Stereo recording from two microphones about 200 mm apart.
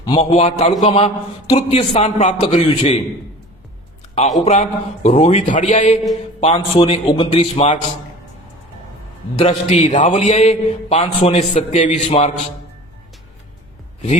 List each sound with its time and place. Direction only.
0.0 s a man's voice: 25° left (ahead or behind)
4.4 s a man's voice: 35° left (ahead or behind)
9.4 s a man's voice: 30° left (ahead or behind)